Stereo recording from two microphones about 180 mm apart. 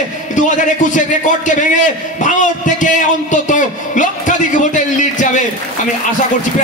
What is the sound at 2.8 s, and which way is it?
A man's voice, 45° left (ahead or behind).